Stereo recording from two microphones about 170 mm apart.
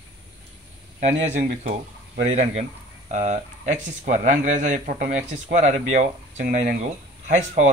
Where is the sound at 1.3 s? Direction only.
45° right (ahead or behind).